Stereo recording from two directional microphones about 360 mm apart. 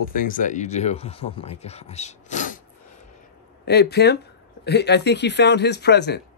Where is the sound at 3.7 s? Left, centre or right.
Left.